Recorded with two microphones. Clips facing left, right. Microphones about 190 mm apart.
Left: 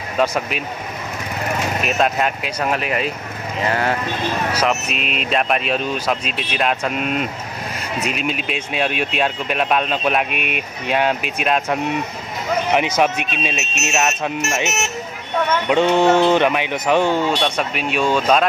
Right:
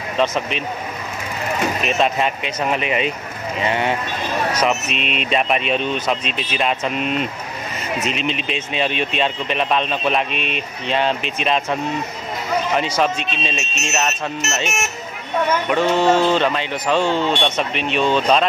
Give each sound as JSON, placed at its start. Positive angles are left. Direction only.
{"t": 0.2, "sound": "speech", "side_deg": 5}
{"t": 1.8, "sound": "speech", "side_deg": 0}
{"t": 12.7, "sound": "speech", "side_deg": 15}
{"t": 15.7, "sound": "speech", "side_deg": 20}